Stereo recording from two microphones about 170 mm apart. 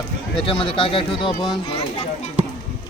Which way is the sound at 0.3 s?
30° left (ahead or behind).